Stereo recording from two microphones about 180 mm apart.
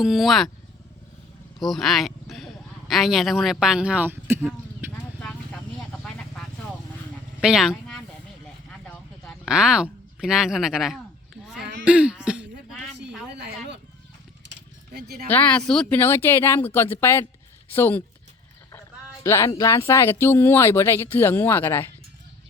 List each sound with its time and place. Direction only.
0.0 s speech: centre (ahead or behind)
1.5 s speech: centre (ahead or behind)
6.0 s vehicle: 5° left (ahead or behind)
7.4 s speech: 5° right (ahead or behind)
9.5 s speech: 5° right (ahead or behind)
13.1 s a sound: 5° right (ahead or behind)
13.3 s a sound: 70° right (ahead or behind)
14.9 s speech: 60° right (ahead or behind)
15.3 s speech: 10° left (ahead or behind)
19.2 s speech: 15° left (ahead or behind)